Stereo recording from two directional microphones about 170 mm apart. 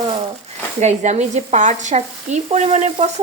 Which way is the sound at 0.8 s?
40° right (ahead or behind).